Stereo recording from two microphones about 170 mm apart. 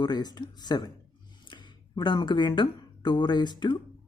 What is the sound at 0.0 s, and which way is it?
Speech, 25° left (ahead or behind).